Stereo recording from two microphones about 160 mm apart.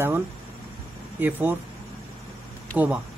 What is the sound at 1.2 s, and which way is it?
Speech, 10° right (ahead or behind).